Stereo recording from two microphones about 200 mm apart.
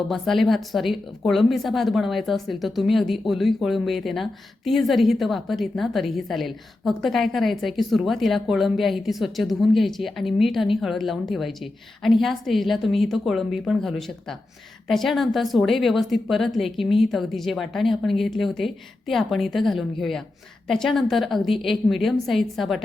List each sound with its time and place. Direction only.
0.1 s a woman's voice: centre (ahead or behind)